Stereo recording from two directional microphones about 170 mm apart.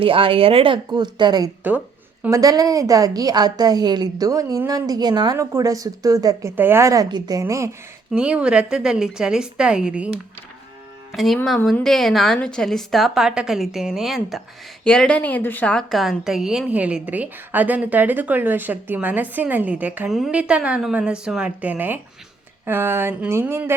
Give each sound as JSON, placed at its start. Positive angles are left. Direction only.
{"t": 0.0, "sound": "speech", "side_deg": -30}
{"t": 1.7, "sound": "a woman's voice", "side_deg": -10}
{"t": 2.2, "sound": "a woman's voice", "side_deg": -20}
{"t": 8.1, "sound": "a woman's voice", "side_deg": -5}
{"t": 11.1, "sound": "a woman's voice", "side_deg": 0}